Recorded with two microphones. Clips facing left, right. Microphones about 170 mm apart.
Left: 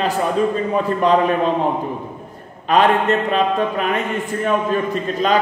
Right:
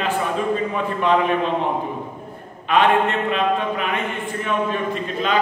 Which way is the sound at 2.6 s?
40° left (ahead or behind).